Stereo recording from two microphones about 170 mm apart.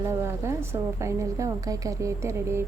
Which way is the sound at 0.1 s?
15° right (ahead or behind).